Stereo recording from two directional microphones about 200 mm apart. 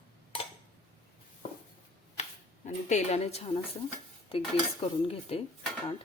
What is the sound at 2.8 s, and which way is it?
Speech, 35° left (ahead or behind).